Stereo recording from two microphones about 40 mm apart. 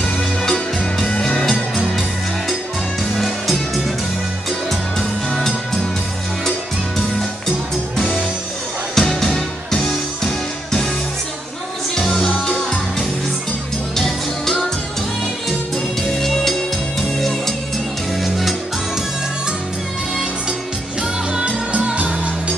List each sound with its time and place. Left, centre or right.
0.4 s music: centre
4.5 s music: centre
8.9 s music: centre
11.9 s music: centre
13.9 s music: centre
16.0 s music: centre
21.3 s music: right